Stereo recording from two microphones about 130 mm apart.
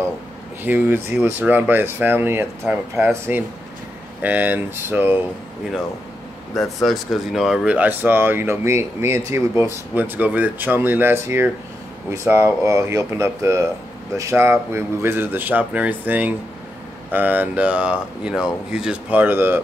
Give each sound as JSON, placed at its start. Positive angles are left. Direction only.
{"t": 0.7, "sound": "speech", "side_deg": -15}
{"t": 6.8, "sound": "speech", "side_deg": 0}